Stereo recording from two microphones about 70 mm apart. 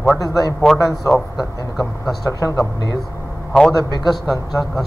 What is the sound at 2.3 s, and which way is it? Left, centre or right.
Speech, left.